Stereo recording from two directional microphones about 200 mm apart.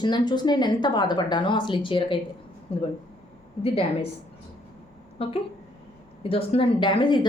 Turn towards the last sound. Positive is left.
turn(degrees=25)  # may be behind; listen again after turning